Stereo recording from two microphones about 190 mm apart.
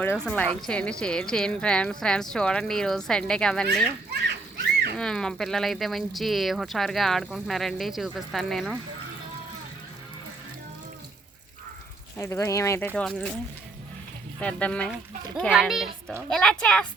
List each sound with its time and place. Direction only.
0.0 s speech: 10° left (ahead or behind)
4.1 s splash: 60° right (ahead or behind)
4.9 s speech: 5° left (ahead or behind)
12.1 s speech: 15° left (ahead or behind)
14.3 s speech: 5° left (ahead or behind)